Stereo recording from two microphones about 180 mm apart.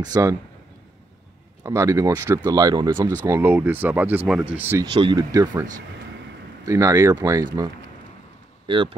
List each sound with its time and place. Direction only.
0.0 s speech: 20° right (ahead or behind)
1.6 s speech: 20° right (ahead or behind)
4.9 s speech: 25° right (ahead or behind)
8.6 s speech: 30° right (ahead or behind)